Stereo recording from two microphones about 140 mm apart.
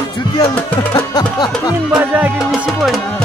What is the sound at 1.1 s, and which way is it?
Music, 30° left (ahead or behind).